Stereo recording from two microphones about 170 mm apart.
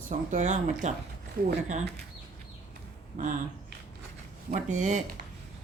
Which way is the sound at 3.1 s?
50° right (ahead or behind).